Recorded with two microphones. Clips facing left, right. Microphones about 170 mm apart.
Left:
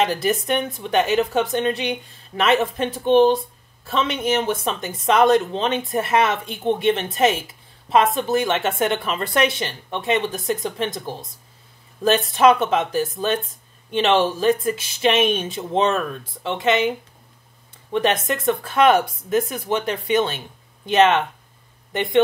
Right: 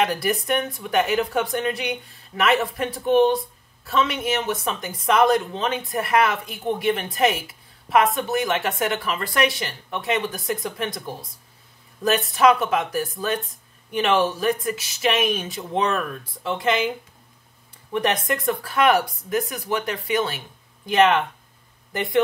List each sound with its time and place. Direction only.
0.0 s speech: 25° left (ahead or behind)
12.4 s speech: 25° left (ahead or behind)
17.9 s speech: 25° left (ahead or behind)